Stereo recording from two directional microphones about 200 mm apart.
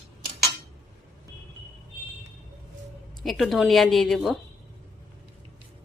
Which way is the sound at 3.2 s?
Centre (ahead or behind).